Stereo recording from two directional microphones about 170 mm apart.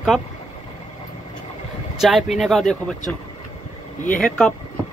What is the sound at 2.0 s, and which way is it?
Speech, centre (ahead or behind).